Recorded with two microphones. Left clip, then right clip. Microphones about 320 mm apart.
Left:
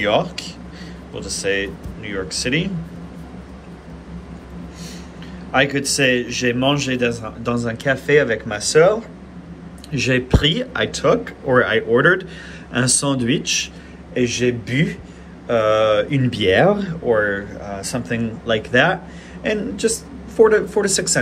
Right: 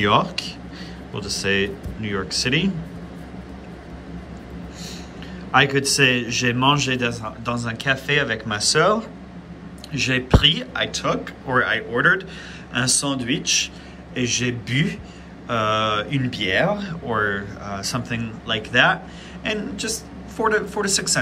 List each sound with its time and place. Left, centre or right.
0.0 s a man's voice: centre
5.5 s a man's voice: centre
9.8 s speech: centre
14.1 s a man's voice: centre
16.3 s speech: centre
17.1 s a man's voice: centre